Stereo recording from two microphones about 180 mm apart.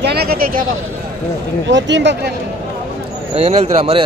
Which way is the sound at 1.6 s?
80° right.